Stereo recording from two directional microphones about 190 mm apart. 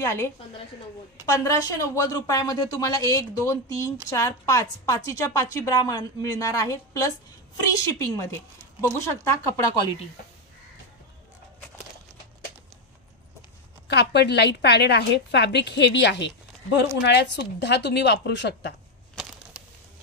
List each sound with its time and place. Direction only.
0.0 s a woman's voice: 15° left (ahead or behind)
13.8 s a woman's voice: 60° left (ahead or behind)
19.6 s crumpling: 5° right (ahead or behind)